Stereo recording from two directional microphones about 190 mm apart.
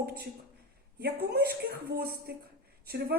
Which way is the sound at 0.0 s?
55° right (ahead or behind).